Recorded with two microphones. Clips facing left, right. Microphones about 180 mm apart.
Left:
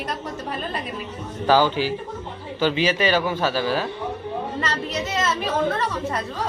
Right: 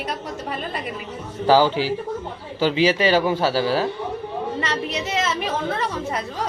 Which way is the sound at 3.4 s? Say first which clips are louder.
Right 2 dB; 30° right (ahead or behind).